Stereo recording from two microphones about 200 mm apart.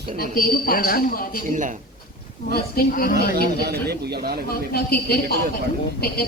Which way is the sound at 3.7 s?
55° right (ahead or behind).